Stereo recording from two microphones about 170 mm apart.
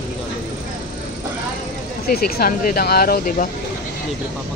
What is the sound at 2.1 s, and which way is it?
Speech, 60° left (ahead or behind).